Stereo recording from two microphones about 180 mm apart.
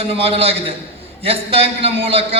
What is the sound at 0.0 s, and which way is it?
A man's voice, 35° right (ahead or behind).